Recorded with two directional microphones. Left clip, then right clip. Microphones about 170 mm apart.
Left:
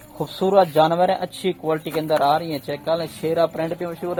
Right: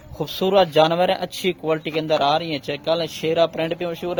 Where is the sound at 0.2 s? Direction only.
35° right (ahead or behind).